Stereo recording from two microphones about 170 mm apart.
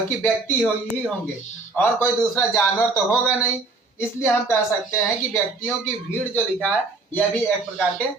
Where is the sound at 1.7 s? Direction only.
15° left (ahead or behind).